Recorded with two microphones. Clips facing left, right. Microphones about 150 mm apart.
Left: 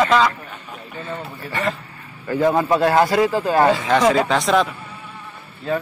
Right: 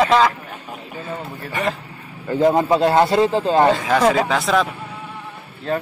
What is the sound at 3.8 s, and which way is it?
Speech, 5° right (ahead or behind).